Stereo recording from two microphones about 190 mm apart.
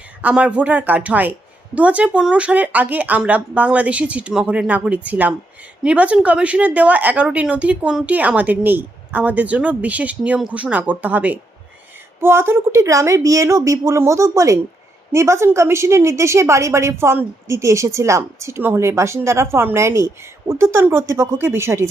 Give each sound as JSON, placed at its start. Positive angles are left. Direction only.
{"t": 0.2, "sound": "speech", "side_deg": -5}